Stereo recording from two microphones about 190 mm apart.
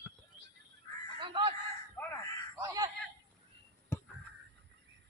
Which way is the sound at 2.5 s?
20° right (ahead or behind).